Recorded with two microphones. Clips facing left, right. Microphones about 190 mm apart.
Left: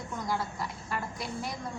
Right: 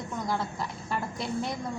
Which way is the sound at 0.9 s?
25° right (ahead or behind).